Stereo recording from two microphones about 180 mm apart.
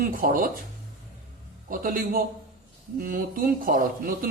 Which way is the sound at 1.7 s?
50° right (ahead or behind).